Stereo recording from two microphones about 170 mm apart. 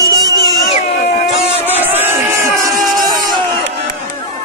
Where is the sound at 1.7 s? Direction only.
10° right (ahead or behind).